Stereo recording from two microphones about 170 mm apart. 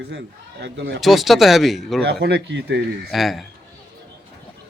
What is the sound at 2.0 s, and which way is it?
Speech, 75° right (ahead or behind).